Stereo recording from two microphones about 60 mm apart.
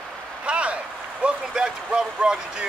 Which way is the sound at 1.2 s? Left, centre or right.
Centre.